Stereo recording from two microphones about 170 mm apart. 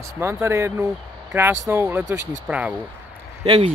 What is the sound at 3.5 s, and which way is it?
Speech, 35° right (ahead or behind).